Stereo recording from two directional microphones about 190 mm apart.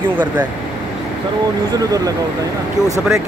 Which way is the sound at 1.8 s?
20° right (ahead or behind).